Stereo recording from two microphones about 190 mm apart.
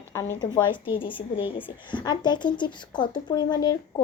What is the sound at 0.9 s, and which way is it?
Speech, 25° left (ahead or behind).